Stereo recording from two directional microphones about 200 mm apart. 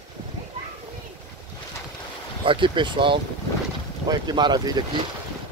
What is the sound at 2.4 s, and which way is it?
Speech, 25° right (ahead or behind).